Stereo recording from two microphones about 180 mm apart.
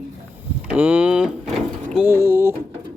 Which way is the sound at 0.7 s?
5° right (ahead or behind).